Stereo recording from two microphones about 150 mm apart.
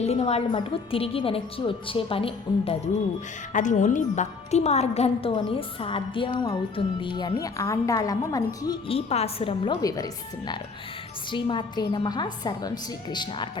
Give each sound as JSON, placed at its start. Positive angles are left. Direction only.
{"t": 0.0, "sound": "a woman's voice", "side_deg": 45}
{"t": 3.5, "sound": "a woman's voice", "side_deg": 55}
{"t": 5.3, "sound": "a woman's voice", "side_deg": 35}
{"t": 7.4, "sound": "a woman's voice", "side_deg": 20}
{"t": 8.9, "sound": "a woman's voice", "side_deg": 45}
{"t": 9.8, "sound": "a woman's voice", "side_deg": 25}